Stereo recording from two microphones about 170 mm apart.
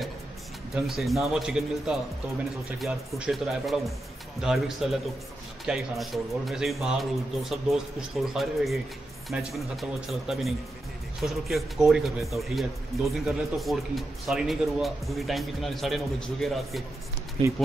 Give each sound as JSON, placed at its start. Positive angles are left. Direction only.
{"t": 0.8, "sound": "a man's voice", "side_deg": 0}
{"t": 17.4, "sound": "speech", "side_deg": -30}